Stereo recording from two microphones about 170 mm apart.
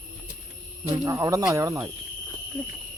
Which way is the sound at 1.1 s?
20° right (ahead or behind).